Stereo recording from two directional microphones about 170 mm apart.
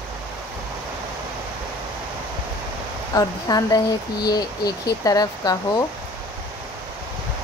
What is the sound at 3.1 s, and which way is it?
Speech, 20° left (ahead or behind).